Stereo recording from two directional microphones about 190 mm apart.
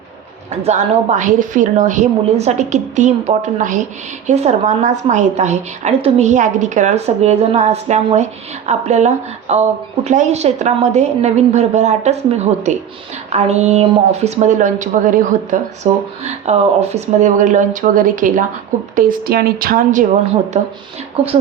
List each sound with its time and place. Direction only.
0.5 s a woman's voice: 35° right (ahead or behind)